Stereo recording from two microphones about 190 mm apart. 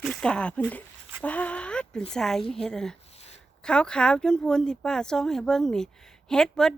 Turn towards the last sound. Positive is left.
turn(degrees=5)  # may be behind; listen again after turning